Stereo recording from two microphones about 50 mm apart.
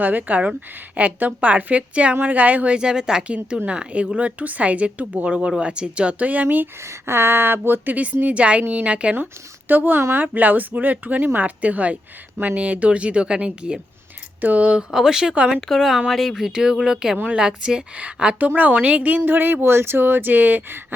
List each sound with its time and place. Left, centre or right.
0.0 s a woman's voice: right
2.7 s a woman's voice: centre; by 6.7 s right
6.8 s speech: right
8.2 s a woman's voice: right
9.1 s a woman's voice: right
14.8 s a woman's voice: centre; by 20.8 s right